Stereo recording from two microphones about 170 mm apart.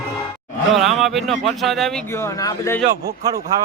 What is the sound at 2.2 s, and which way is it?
Speech, 15° left (ahead or behind).